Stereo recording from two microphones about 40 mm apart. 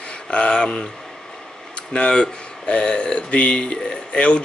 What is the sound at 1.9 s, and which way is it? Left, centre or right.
Speech, left.